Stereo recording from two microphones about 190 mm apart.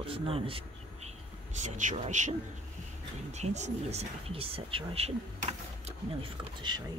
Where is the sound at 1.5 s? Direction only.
40° right (ahead or behind); by 6.8 s 25° right (ahead or behind).